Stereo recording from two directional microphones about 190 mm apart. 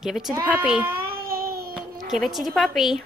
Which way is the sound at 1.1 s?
50° right (ahead or behind).